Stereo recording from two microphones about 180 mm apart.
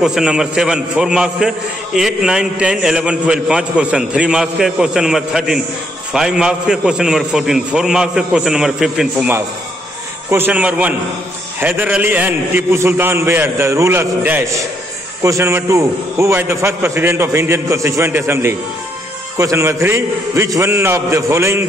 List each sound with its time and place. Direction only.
0.0 s a man's voice: 5° right (ahead or behind)